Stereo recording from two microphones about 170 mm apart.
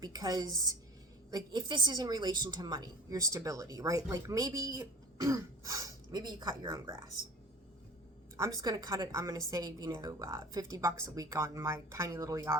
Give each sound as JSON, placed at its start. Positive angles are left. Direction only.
{"t": 0.0, "sound": "a woman's voice", "side_deg": -25}
{"t": 8.4, "sound": "a woman's voice", "side_deg": -20}